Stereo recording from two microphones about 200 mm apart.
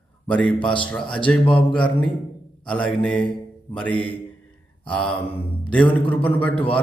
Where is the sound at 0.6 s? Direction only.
25° left (ahead or behind).